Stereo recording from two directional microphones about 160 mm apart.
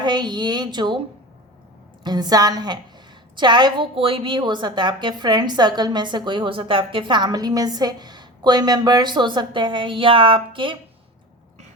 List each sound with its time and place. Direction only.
0.0 s a woman's voice: 25° right (ahead or behind)
2.0 s a woman's voice: 25° right (ahead or behind)